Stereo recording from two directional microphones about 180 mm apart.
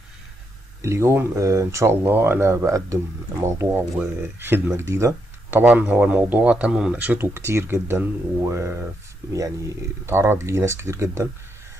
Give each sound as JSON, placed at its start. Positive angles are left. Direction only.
{"t": 0.8, "sound": "speech", "side_deg": -15}
{"t": 10.0, "sound": "speech", "side_deg": -15}